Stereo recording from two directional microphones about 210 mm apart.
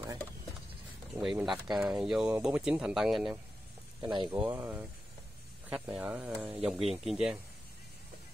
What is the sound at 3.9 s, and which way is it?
Speech, 20° right (ahead or behind).